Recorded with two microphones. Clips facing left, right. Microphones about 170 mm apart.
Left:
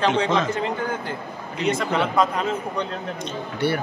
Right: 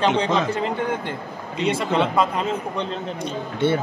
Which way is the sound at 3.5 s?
20° right (ahead or behind).